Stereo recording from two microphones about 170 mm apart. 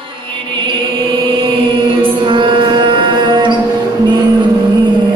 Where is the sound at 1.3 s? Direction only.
30° right (ahead or behind).